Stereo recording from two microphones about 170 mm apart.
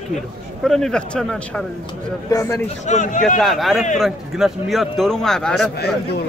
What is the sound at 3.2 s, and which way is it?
A man's voice, centre (ahead or behind).